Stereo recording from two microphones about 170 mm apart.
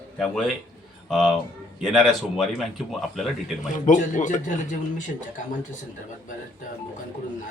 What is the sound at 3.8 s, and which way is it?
Speech, 45° left (ahead or behind).